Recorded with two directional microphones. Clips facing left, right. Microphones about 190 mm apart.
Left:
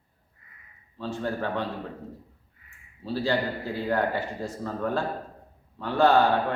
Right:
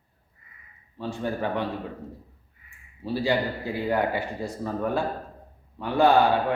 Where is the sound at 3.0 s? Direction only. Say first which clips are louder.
Right 2 dB; 15° right (ahead or behind).